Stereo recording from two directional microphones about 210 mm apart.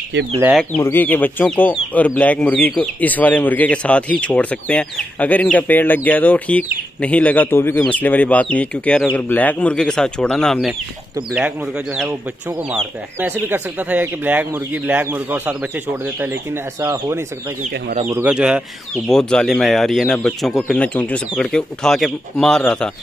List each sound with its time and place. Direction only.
0.6 s speech: 10° left (ahead or behind)
13.2 s speech: 10° right (ahead or behind)
16.8 s speech: 10° right (ahead or behind); by 22.8 s 5° left (ahead or behind)